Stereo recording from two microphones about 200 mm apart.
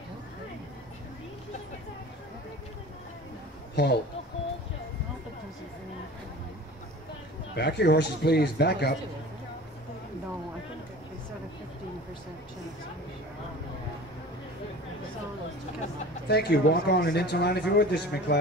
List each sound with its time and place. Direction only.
3.7 s speech: 55° left (ahead or behind)
7.5 s speech: 55° left (ahead or behind)
16.3 s speech: 55° left (ahead or behind)